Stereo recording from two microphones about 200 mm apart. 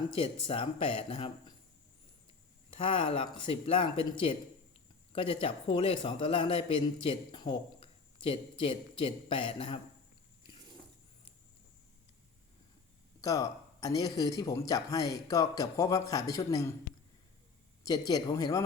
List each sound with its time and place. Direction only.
0.1 s a man's voice: 30° left (ahead or behind)
2.6 s a man's voice: 25° left (ahead or behind)
5.1 s a man's voice: 25° left (ahead or behind)
13.2 s speech: 15° left (ahead or behind)
17.8 s a man's voice: 20° left (ahead or behind)